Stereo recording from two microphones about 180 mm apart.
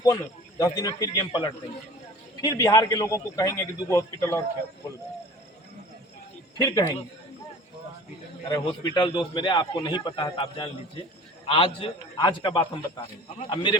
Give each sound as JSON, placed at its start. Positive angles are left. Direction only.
{"t": 0.6, "sound": "a man's voice", "side_deg": 20}
{"t": 6.6, "sound": "a man's voice", "side_deg": 25}
{"t": 8.4, "sound": "a man's voice", "side_deg": 25}